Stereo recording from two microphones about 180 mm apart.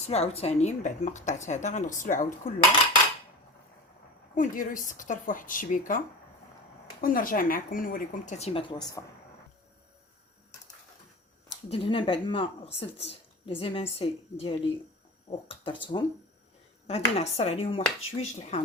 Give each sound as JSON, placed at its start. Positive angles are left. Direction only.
{"t": 0.1, "sound": "speech", "side_deg": 35}
{"t": 4.4, "sound": "speech", "side_deg": 45}
{"t": 7.0, "sound": "speech", "side_deg": 50}
{"t": 11.7, "sound": "speech", "side_deg": 30}